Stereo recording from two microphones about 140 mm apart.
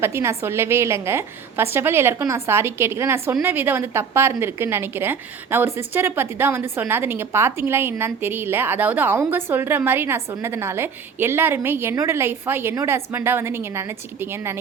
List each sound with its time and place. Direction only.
0.0 s a woman's voice: 20° right (ahead or behind)